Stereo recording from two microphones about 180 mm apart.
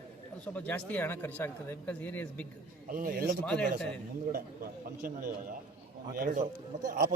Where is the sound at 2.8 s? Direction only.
50° right (ahead or behind).